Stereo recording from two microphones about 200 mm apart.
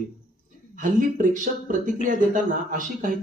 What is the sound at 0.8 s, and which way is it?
Speech, 40° right (ahead or behind).